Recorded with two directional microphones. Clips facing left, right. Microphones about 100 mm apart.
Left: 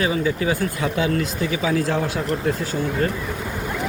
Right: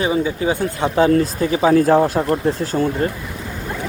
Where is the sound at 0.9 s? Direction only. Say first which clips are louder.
Right 10 dB; 40° right (ahead or behind).